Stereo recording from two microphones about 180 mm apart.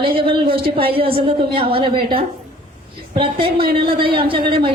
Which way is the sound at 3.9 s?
55° right (ahead or behind).